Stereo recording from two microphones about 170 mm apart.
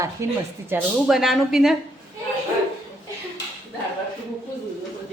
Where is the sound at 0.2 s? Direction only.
15° right (ahead or behind).